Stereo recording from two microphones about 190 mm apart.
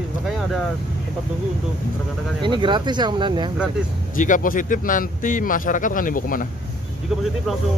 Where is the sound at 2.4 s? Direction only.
25° right (ahead or behind).